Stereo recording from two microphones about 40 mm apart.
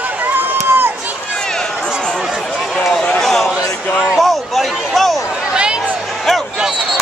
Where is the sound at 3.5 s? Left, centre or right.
Right.